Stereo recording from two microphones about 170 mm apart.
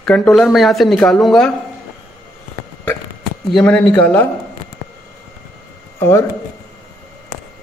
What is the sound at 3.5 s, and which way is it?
Speech, 5° left (ahead or behind).